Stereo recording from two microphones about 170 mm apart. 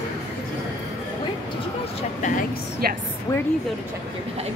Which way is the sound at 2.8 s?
65° right (ahead or behind).